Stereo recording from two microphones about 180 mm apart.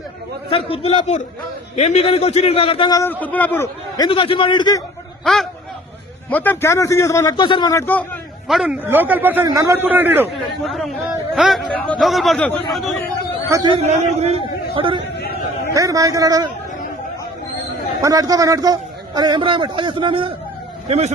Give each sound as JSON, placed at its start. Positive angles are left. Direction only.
{"t": 0.5, "sound": "a man's voice", "side_deg": 30}
{"t": 3.0, "sound": "a man's voice", "side_deg": 10}
{"t": 5.2, "sound": "a man's voice", "side_deg": 0}
{"t": 8.4, "sound": "a man's voice", "side_deg": -5}
{"t": 10.6, "sound": "speech", "side_deg": 0}
{"t": 13.5, "sound": "a man's voice", "side_deg": -25}
{"t": 13.8, "sound": "a man's voice", "side_deg": -40}
{"t": 14.8, "sound": "a man's voice", "side_deg": -30}
{"t": 15.2, "sound": "chatter", "side_deg": 60}
{"t": 15.7, "sound": "a man's voice", "side_deg": -20}
{"t": 18.0, "sound": "a man's voice", "side_deg": -20}